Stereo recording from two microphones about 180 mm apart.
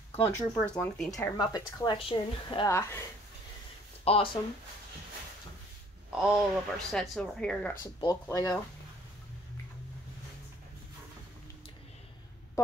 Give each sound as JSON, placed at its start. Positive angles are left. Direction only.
{"t": 0.1, "sound": "speech", "side_deg": 10}
{"t": 1.1, "sound": "a woman's voice", "side_deg": 20}
{"t": 2.7, "sound": "speech", "side_deg": 15}
{"t": 4.0, "sound": "speech", "side_deg": 30}
{"t": 6.1, "sound": "speech", "side_deg": 0}
{"t": 7.8, "sound": "a woman's voice", "side_deg": 20}